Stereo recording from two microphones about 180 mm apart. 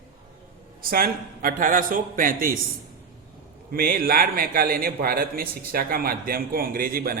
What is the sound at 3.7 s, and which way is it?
A man's voice, 55° right (ahead or behind).